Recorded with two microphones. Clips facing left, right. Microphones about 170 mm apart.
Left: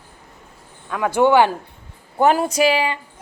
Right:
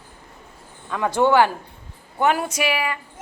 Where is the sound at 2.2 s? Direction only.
35° left (ahead or behind).